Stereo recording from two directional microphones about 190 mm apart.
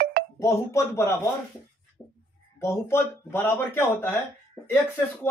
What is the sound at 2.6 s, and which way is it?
Speech, 15° left (ahead or behind).